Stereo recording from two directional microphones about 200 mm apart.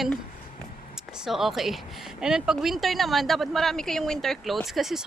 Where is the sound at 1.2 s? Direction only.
Centre (ahead or behind).